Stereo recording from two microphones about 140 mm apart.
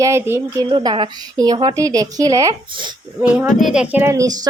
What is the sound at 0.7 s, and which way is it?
A woman's voice, 35° right (ahead or behind).